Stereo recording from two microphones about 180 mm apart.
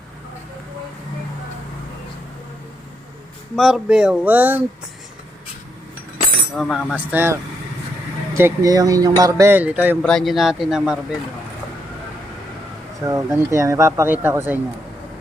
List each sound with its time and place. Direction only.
3.5 s speech: centre (ahead or behind)
6.6 s speech: centre (ahead or behind)
6.9 s speech: 10° right (ahead or behind)
10.0 s speech: 5° left (ahead or behind)
13.1 s speech: 15° right (ahead or behind)